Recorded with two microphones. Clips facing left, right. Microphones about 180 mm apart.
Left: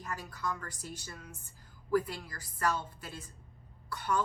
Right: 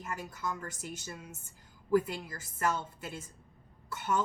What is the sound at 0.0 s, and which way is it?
A woman's voice, 25° right (ahead or behind).